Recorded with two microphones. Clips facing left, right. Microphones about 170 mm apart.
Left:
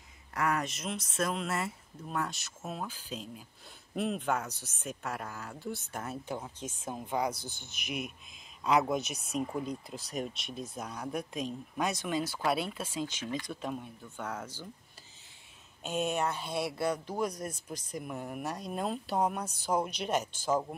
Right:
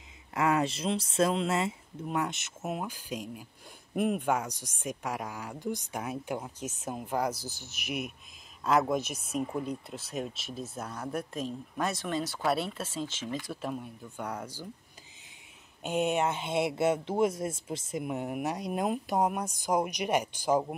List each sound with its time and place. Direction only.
0.3 s speech: 25° right (ahead or behind)
15.8 s speech: 15° right (ahead or behind)